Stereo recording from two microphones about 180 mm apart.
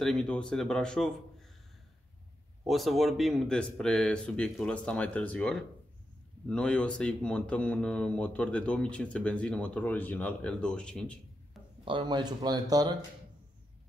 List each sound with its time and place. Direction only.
0.0 s speech: 5° left (ahead or behind)
2.6 s speech: centre (ahead or behind)
11.8 s speech: 25° right (ahead or behind)